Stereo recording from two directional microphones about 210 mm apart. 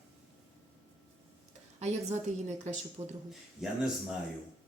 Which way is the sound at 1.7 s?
30° right (ahead or behind).